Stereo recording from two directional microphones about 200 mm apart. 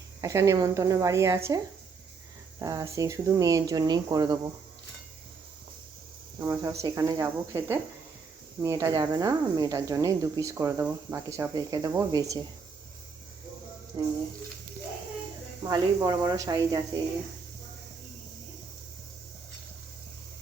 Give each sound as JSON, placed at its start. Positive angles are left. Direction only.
{"t": 0.2, "sound": "speech", "side_deg": -15}
{"t": 6.4, "sound": "speech", "side_deg": -15}
{"t": 13.9, "sound": "speech", "side_deg": -20}
{"t": 15.6, "sound": "speech", "side_deg": -15}